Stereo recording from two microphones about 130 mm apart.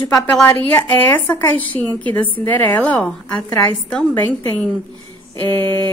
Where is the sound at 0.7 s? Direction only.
15° left (ahead or behind).